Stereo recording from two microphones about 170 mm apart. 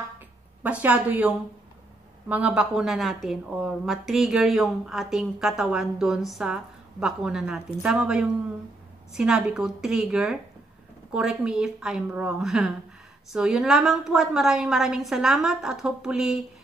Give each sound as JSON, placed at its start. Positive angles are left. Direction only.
{"t": 0.7, "sound": "a woman's voice", "side_deg": -10}